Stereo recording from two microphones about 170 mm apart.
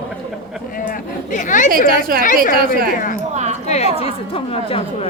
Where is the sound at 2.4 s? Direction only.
55° left (ahead or behind).